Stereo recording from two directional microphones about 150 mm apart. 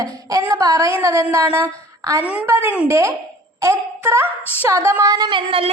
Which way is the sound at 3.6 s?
20° right (ahead or behind).